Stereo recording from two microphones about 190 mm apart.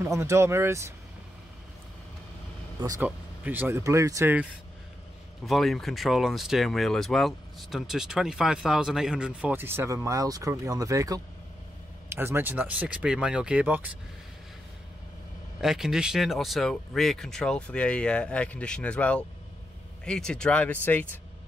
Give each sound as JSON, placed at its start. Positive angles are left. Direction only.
{"t": 0.0, "sound": "speech", "side_deg": -15}
{"t": 2.8, "sound": "speech", "side_deg": -20}
{"t": 5.4, "sound": "speech", "side_deg": 0}
{"t": 15.6, "sound": "speech", "side_deg": 0}